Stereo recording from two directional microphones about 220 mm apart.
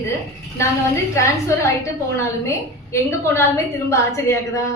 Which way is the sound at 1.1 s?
15° left (ahead or behind).